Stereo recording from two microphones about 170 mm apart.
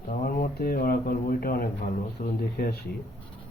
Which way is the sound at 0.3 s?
60° left (ahead or behind).